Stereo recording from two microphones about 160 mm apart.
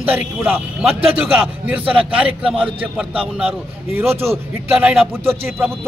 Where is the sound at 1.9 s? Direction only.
5° right (ahead or behind).